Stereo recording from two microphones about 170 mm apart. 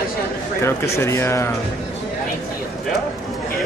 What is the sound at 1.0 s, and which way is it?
Speech, 15° left (ahead or behind).